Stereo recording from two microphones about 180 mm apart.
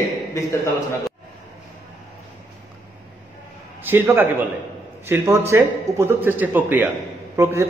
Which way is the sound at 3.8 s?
10° right (ahead or behind).